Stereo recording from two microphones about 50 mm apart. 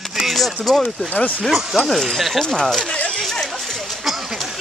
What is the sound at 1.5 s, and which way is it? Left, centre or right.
Speech, centre.